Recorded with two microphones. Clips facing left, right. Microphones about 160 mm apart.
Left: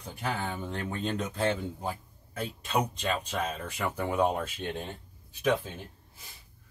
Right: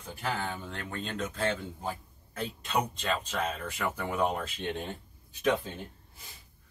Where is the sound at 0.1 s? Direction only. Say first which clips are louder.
Even; 20° left (ahead or behind).